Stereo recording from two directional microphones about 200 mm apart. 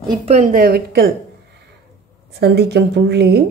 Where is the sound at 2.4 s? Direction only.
55° right (ahead or behind).